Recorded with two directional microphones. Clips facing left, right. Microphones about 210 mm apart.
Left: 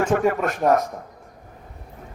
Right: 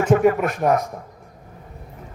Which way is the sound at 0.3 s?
15° right (ahead or behind).